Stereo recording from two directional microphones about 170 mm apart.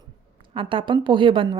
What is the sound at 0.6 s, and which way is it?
A woman's voice, 30° right (ahead or behind).